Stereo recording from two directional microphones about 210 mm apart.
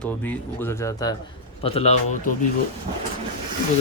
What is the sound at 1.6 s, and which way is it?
Speech, 30° left (ahead or behind).